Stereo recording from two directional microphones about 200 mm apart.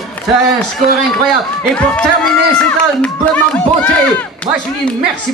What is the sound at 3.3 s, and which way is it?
Speech, 5° left (ahead or behind).